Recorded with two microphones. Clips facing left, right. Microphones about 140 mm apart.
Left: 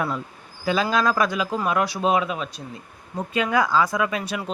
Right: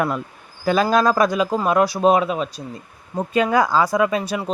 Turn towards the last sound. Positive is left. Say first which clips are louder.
# right 5 dB
turn(degrees=-30)  # may be behind; listen again after turning